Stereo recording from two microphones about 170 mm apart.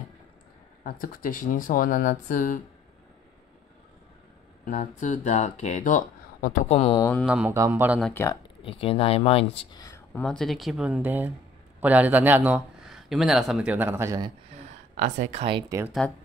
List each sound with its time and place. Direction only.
0.8 s speech: 60° left (ahead or behind)
4.6 s speech: 45° left (ahead or behind)
7.2 s a man's voice: 5° right (ahead or behind)
8.0 s speech: 15° left (ahead or behind)
8.6 s speech: 35° left (ahead or behind); by 10.2 s 20° left (ahead or behind)
10.2 s a man's voice: centre (ahead or behind); by 14.3 s 20° right (ahead or behind)
15.0 s speech: 45° right (ahead or behind)
16.0 s speech: 10° left (ahead or behind)